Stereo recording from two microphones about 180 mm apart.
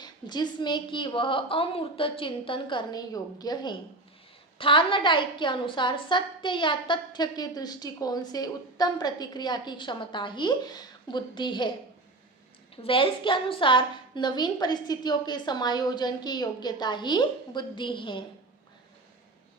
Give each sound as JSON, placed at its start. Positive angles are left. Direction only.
{"t": 0.0, "sound": "a woman's voice", "side_deg": 25}
{"t": 12.7, "sound": "a woman's voice", "side_deg": 30}